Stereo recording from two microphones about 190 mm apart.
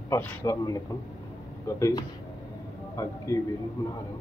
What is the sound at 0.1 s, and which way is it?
Speech, 10° left (ahead or behind).